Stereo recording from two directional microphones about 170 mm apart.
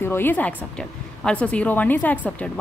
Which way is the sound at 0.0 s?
15° left (ahead or behind).